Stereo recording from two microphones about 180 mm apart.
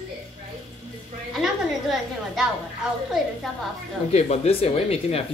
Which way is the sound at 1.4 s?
Centre (ahead or behind).